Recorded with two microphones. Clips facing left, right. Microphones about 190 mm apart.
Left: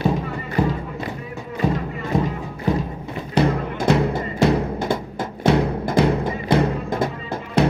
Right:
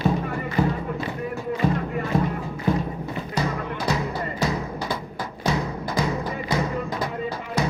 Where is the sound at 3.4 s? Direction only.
60° left (ahead or behind).